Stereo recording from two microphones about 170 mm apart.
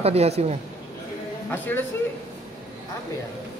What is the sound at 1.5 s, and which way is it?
Speech, 10° left (ahead or behind).